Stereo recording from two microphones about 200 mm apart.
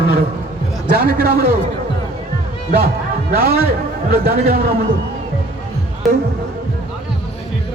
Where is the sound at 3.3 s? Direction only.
50° right (ahead or behind).